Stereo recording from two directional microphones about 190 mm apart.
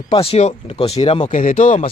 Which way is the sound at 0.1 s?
30° left (ahead or behind).